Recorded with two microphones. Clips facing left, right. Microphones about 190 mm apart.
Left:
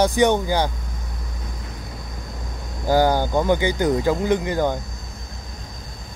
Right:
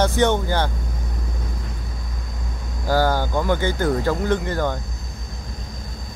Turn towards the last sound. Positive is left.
turn(degrees=15)  # may be behind; listen again after turning